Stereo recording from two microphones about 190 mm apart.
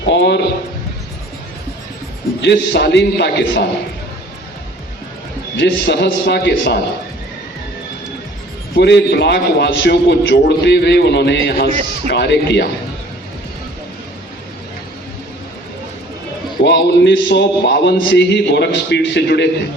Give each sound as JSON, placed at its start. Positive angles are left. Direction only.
{"t": 0.0, "sound": "a man's voice", "side_deg": 65}
{"t": 2.4, "sound": "a man's voice", "side_deg": 65}
{"t": 5.5, "sound": "a man's voice", "side_deg": 65}
{"t": 8.7, "sound": "a man's voice", "side_deg": 60}
{"t": 16.6, "sound": "a man's voice", "side_deg": 65}